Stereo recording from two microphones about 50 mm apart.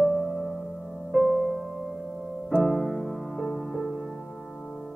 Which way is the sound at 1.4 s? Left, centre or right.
Centre.